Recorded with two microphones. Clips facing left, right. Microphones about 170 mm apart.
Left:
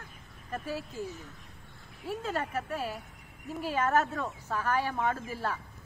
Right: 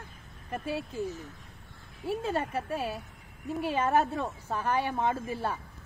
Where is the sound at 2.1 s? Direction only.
25° right (ahead or behind).